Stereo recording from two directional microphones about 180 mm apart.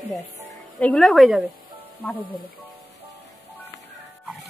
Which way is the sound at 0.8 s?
5° left (ahead or behind).